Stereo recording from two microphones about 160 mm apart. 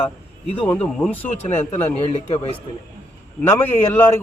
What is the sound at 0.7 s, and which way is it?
Speech, 5° left (ahead or behind).